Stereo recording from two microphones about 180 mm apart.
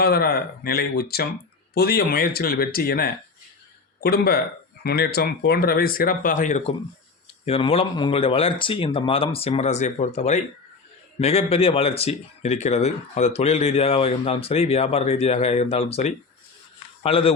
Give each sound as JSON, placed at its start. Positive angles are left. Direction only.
{"t": 0.0, "sound": "speech", "side_deg": 60}
{"t": 7.4, "sound": "speech", "side_deg": 35}